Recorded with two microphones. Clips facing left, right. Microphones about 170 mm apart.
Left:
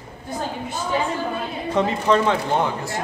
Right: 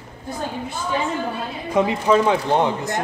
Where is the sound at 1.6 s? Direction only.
10° right (ahead or behind).